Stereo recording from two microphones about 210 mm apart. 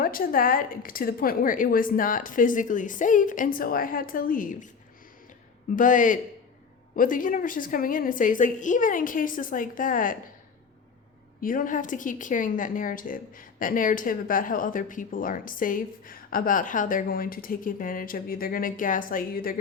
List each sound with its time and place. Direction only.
0.0 s a woman's voice: 45° left (ahead or behind)
5.7 s a woman's voice: 40° left (ahead or behind)
11.3 s a woman's voice: 40° left (ahead or behind)